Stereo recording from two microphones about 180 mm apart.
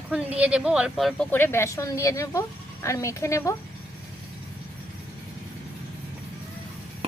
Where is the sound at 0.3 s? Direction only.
5° right (ahead or behind).